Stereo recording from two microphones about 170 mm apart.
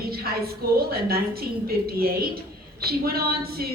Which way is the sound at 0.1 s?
65° right (ahead or behind).